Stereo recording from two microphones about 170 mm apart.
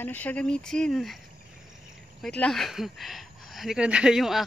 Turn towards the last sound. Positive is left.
turn(degrees=0)  # may be behind; listen again after turning